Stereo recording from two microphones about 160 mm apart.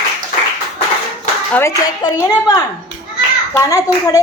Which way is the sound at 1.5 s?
15° left (ahead or behind).